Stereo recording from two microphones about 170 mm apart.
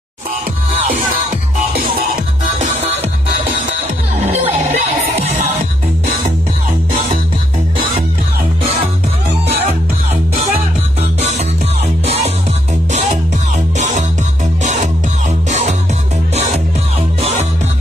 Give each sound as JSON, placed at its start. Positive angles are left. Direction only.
{"t": 1.8, "sound": "music", "side_deg": -55}
{"t": 4.6, "sound": "music", "side_deg": -45}
{"t": 11.0, "sound": "music", "side_deg": -40}
{"t": 13.7, "sound": "music", "side_deg": -45}
{"t": 17.2, "sound": "music", "side_deg": -40}